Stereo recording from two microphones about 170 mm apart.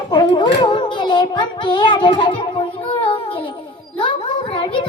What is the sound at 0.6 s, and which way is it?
Music, 25° left (ahead or behind).